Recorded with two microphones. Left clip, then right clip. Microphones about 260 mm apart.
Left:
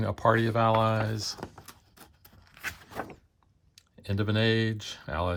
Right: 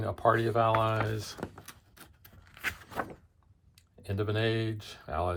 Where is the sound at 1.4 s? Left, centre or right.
Centre.